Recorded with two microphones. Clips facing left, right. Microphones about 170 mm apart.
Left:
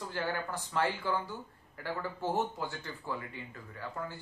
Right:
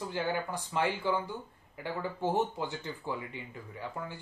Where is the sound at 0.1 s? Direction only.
15° right (ahead or behind).